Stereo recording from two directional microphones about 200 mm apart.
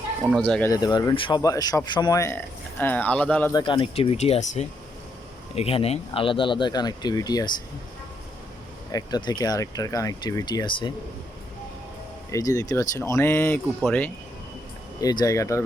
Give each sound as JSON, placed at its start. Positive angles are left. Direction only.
{"t": 0.3, "sound": "speech", "side_deg": 5}
{"t": 0.7, "sound": "speech", "side_deg": 20}
{"t": 3.5, "sound": "speech", "side_deg": 25}
{"t": 8.9, "sound": "speech", "side_deg": 20}
{"t": 12.3, "sound": "speech", "side_deg": 15}
{"t": 15.0, "sound": "speech", "side_deg": 20}